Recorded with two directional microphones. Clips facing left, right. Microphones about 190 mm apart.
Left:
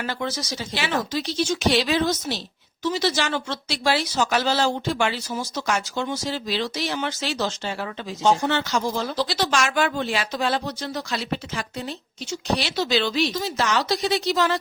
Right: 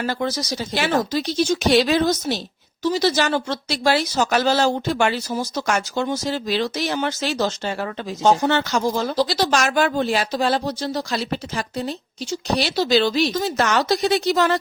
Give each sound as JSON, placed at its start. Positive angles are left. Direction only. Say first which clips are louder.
{"t": 0.0, "sound": "speech", "louder": "right 4 dB", "side_deg": -40}